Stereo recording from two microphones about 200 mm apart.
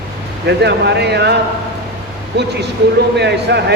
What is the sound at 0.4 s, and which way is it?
Speech, 55° right (ahead or behind).